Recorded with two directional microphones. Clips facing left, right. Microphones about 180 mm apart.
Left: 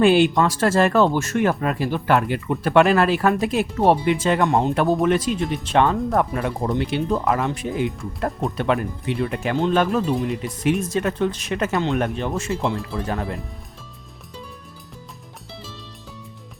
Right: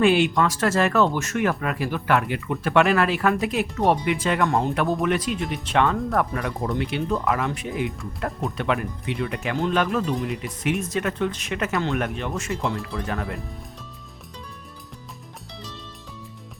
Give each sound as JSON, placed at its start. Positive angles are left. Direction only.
{"t": 0.0, "sound": "speech", "side_deg": 35}